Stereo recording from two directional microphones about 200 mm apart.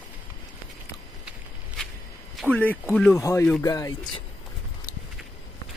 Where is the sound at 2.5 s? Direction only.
10° left (ahead or behind).